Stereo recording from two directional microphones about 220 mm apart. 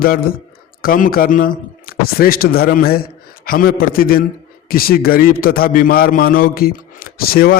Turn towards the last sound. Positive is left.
turn(degrees=45)  # may be behind; listen again after turning